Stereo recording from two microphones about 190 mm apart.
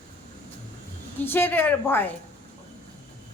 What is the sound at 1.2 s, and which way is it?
Speech, 10° left (ahead or behind).